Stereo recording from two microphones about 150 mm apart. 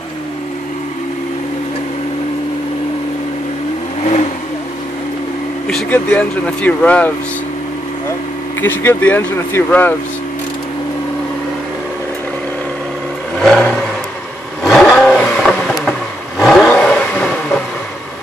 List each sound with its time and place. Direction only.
4.0 s vehicle: 45° left (ahead or behind)
5.7 s speech: 5° left (ahead or behind)
8.5 s speech: 15° left (ahead or behind)
13.4 s vehicle: centre (ahead or behind)